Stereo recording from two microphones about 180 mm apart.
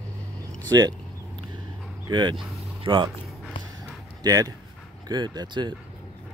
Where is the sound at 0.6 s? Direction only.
20° right (ahead or behind).